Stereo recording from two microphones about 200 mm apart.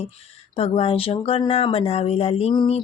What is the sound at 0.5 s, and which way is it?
Speech, 30° left (ahead or behind).